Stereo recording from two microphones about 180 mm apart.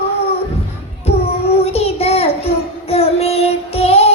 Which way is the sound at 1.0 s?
35° left (ahead or behind).